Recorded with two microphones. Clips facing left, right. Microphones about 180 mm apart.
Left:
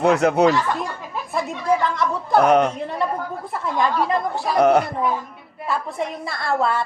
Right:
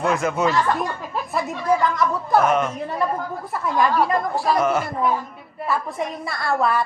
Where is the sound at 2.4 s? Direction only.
75° left (ahead or behind).